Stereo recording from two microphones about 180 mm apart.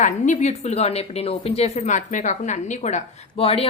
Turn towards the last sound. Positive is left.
turn(degrees=35)  # may be behind; listen again after turning